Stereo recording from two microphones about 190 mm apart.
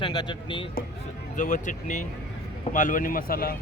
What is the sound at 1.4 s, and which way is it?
A man's voice, 40° left (ahead or behind).